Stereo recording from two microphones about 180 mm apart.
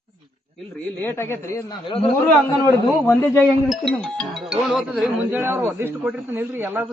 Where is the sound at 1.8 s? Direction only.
30° left (ahead or behind).